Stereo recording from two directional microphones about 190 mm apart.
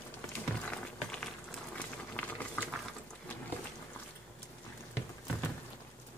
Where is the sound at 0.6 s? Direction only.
5° left (ahead or behind).